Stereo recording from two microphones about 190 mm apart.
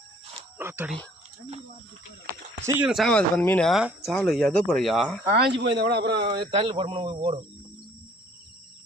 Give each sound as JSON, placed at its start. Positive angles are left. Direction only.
{"t": 0.6, "sound": "speech", "side_deg": -10}
{"t": 2.9, "sound": "speech", "side_deg": 5}
{"t": 5.3, "sound": "a man's voice", "side_deg": -60}
{"t": 6.3, "sound": "speech", "side_deg": -30}